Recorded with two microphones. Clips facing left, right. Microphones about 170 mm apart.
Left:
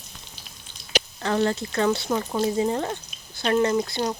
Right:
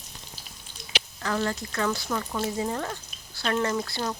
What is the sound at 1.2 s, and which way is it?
Speech, 30° left (ahead or behind).